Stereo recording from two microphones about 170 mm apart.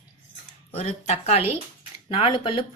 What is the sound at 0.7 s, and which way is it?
Speech, 40° left (ahead or behind).